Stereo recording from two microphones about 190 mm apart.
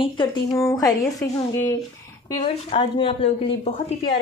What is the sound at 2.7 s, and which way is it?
A woman's voice, 30° left (ahead or behind).